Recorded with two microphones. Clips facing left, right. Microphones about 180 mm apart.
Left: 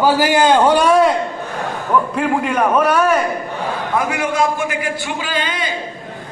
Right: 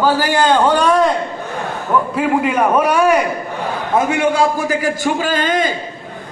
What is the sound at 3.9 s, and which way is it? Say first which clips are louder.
A man's voice: right 4 dB; 25° right (ahead or behind).